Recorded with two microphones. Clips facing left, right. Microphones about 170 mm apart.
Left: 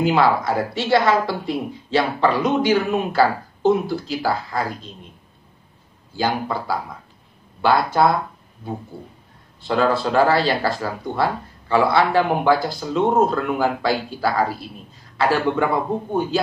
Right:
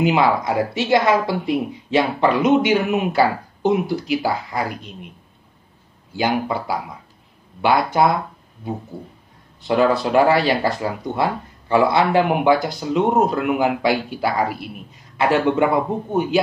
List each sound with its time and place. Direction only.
0.0 s speech: 20° right (ahead or behind)
6.1 s speech: 20° right (ahead or behind)
9.6 s speech: 20° right (ahead or behind)